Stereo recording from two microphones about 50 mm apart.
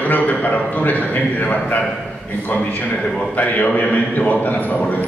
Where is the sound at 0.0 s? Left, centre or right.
Left.